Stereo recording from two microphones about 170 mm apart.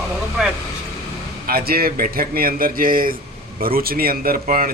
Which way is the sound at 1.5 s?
65° right (ahead or behind).